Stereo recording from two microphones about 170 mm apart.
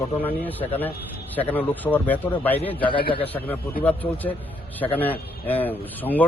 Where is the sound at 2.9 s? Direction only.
30° left (ahead or behind).